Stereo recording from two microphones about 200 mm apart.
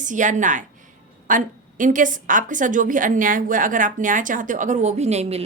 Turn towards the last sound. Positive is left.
turn(degrees=-30)  # may be behind; listen again after turning